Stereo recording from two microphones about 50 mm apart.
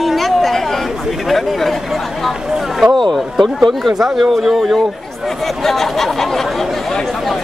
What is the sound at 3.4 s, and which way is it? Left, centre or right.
A man's voice, centre.